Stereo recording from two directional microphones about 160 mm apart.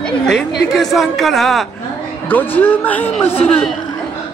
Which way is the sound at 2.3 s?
10° left (ahead or behind).